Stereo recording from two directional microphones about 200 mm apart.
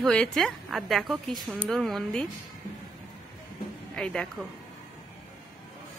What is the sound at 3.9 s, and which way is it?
Speech, 5° left (ahead or behind).